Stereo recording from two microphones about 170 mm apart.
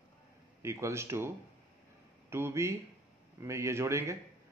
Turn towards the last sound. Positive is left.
turn(degrees=-15)  # may be behind; listen again after turning